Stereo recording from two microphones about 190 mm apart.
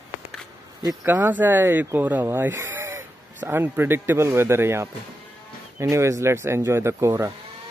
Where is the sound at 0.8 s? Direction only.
10° right (ahead or behind).